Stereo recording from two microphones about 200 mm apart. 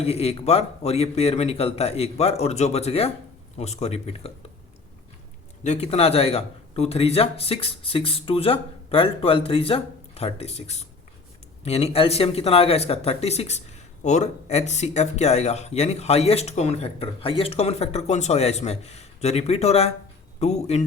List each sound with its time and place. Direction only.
0.0 s speech: 30° left (ahead or behind)
5.6 s speech: 30° left (ahead or behind)